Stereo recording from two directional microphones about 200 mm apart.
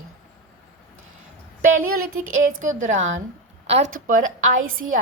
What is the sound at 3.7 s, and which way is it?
Speech, 35° right (ahead or behind).